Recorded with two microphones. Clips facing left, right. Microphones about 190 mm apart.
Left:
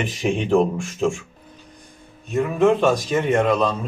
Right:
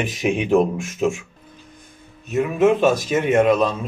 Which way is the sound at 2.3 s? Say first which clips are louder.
Right 1 dB; 5° right (ahead or behind).